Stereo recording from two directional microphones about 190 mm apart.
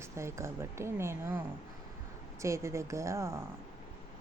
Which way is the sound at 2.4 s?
15° right (ahead or behind).